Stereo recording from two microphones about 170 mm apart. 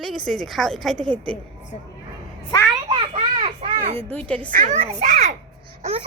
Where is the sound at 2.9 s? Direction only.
30° right (ahead or behind).